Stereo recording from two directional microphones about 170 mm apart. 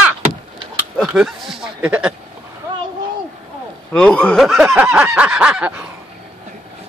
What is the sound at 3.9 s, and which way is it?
Speech, 5° left (ahead or behind).